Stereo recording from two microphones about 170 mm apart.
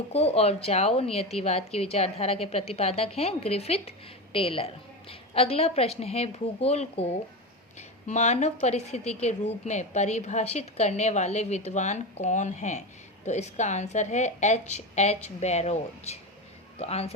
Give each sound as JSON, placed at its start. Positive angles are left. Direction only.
{"t": 0.1, "sound": "a woman's voice", "side_deg": 35}